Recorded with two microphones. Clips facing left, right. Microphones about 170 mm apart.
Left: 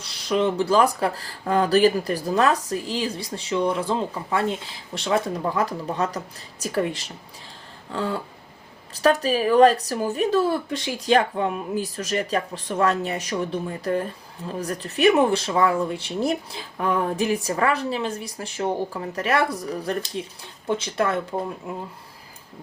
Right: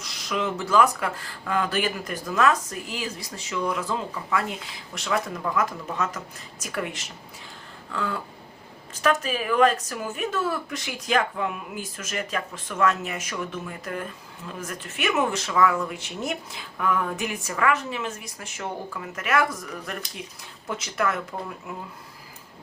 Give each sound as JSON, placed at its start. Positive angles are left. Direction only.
{"t": 0.0, "sound": "speech", "side_deg": 30}